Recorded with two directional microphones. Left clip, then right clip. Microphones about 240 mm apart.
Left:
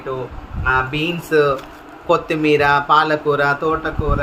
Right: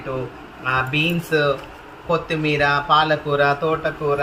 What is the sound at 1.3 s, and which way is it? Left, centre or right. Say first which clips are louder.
Speech: left 8 dB; left.